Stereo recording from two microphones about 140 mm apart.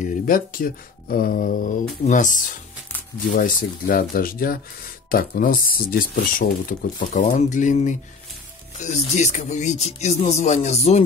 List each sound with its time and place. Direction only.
0.0 s speech: 85° left; by 2.4 s 65° left (ahead or behind)
3.3 s speech: 90° left; by 11.0 s 50° left (ahead or behind)